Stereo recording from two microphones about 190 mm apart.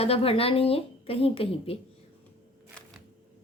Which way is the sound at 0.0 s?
30° left (ahead or behind).